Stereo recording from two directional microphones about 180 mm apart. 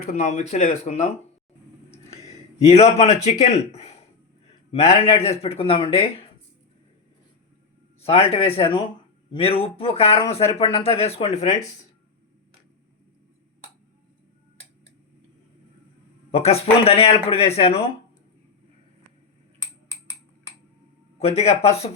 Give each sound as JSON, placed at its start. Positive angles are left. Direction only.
{"t": 0.1, "sound": "speech", "side_deg": 40}
{"t": 2.2, "sound": "a sound", "side_deg": 35}
{"t": 3.2, "sound": "speech", "side_deg": 40}
{"t": 8.0, "sound": "speech", "side_deg": 35}
{"t": 16.3, "sound": "speech", "side_deg": 35}
{"t": 21.2, "sound": "speech", "side_deg": 35}